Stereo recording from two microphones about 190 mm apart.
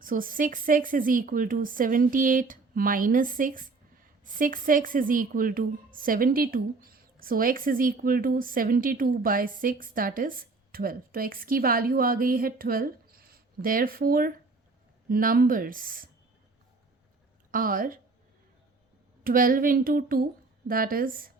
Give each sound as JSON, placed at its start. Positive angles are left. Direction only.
{"t": 0.0, "sound": "a woman's voice", "side_deg": -45}
{"t": 17.5, "sound": "a woman's voice", "side_deg": -45}
{"t": 19.2, "sound": "a woman's voice", "side_deg": -50}